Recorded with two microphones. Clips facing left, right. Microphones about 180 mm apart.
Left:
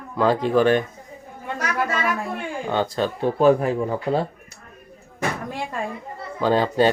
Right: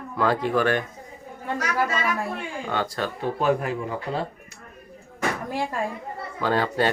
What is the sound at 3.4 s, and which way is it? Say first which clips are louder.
Speech: left 7 dB; 35° left (ahead or behind).